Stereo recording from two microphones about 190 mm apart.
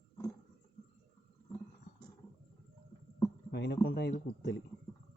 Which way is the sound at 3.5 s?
60° left (ahead or behind).